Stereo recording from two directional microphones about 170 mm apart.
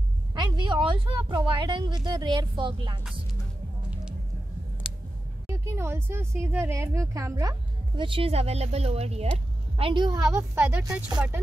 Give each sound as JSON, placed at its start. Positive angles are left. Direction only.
{"t": 0.3, "sound": "speech", "side_deg": -25}
{"t": 5.5, "sound": "speech", "side_deg": -15}